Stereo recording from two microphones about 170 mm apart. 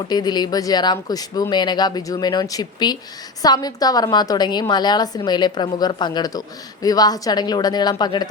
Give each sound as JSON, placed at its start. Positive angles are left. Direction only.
{"t": 0.1, "sound": "speech", "side_deg": 25}